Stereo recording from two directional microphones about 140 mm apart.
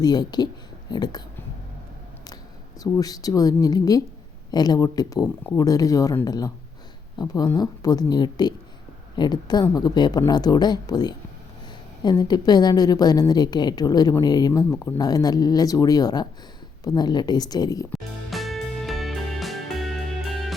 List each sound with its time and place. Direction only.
0.0 s a woman's voice: 30° left (ahead or behind)
2.8 s a woman's voice: 25° left (ahead or behind)
5.2 s speech: 15° left (ahead or behind)
5.5 s a woman's voice: 25° left (ahead or behind)
18.3 s music: centre (ahead or behind)